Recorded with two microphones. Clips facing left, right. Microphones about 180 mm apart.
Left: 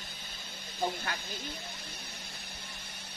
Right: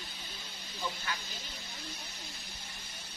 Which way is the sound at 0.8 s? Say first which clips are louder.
Left 5 dB; 55° left (ahead or behind).